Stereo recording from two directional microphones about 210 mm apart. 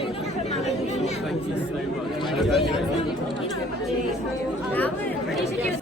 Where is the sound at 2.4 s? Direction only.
Centre (ahead or behind).